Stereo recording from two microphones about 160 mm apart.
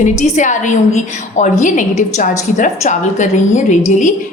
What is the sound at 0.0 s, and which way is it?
A woman's voice, 50° left (ahead or behind).